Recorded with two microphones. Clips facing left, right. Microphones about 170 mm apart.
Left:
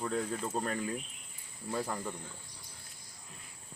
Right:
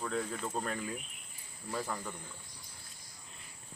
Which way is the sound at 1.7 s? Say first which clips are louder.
Left 2 dB; 15° left (ahead or behind).